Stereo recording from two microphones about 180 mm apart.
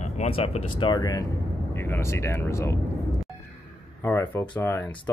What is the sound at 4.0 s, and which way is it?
Speech, 15° left (ahead or behind).